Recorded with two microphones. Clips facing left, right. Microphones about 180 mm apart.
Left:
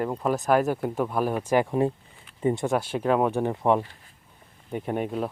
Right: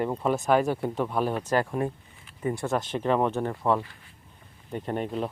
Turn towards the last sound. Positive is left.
turn(degrees=5)  # may be behind; listen again after turning